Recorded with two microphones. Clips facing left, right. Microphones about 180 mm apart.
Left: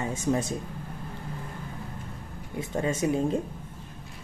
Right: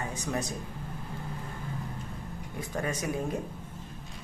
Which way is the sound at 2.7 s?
25° left (ahead or behind).